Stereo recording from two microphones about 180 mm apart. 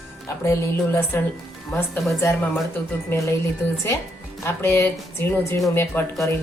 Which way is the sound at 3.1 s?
15° left (ahead or behind).